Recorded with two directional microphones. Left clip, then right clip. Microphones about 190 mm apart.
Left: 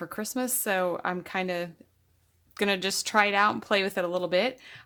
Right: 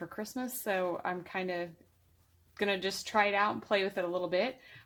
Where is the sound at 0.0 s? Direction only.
45° left (ahead or behind).